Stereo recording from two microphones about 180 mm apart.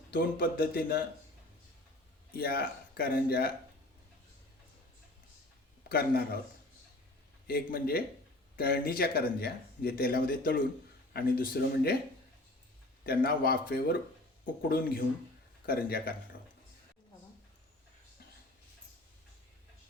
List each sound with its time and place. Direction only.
0.1 s speech: 55° left (ahead or behind)
2.3 s speech: 55° left (ahead or behind)
5.9 s speech: 55° left (ahead or behind)
7.4 s speech: 60° left (ahead or behind)
13.1 s speech: 55° left (ahead or behind)